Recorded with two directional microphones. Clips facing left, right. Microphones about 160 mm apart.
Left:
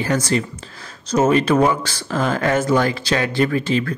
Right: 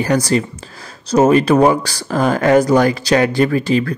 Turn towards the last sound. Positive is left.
turn(degrees=-35)  # may be behind; listen again after turning